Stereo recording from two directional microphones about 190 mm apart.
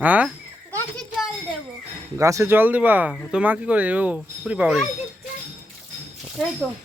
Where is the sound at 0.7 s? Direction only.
5° left (ahead or behind).